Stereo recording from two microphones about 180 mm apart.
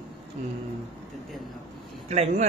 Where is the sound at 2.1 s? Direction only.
40° right (ahead or behind).